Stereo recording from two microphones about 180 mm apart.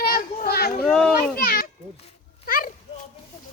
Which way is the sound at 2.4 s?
55° left (ahead or behind).